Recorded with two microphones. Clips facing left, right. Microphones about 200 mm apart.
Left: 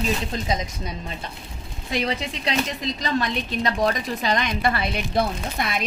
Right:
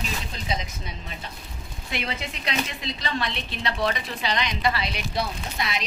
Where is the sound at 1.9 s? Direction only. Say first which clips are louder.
Left 6 dB; 35° left (ahead or behind).